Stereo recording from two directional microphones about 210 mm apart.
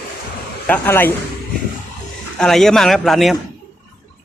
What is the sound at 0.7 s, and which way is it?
Speech, 10° left (ahead or behind).